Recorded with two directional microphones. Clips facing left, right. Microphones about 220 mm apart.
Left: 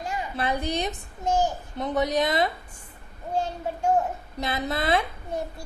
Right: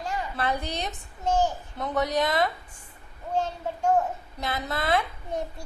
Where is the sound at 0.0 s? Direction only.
15° left (ahead or behind).